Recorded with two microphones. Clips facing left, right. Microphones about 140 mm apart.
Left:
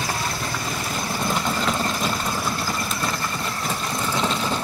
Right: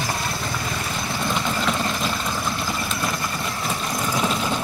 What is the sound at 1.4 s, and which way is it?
Vehicle, centre (ahead or behind).